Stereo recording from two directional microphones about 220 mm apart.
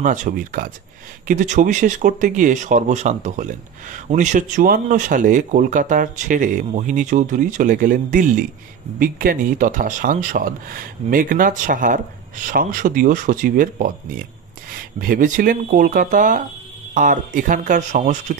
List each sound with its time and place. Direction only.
0.0 s speech: 35° right (ahead or behind)
15.0 s speech: 40° right (ahead or behind)